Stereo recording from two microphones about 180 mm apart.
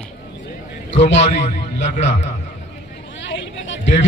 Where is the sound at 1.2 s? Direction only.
40° left (ahead or behind).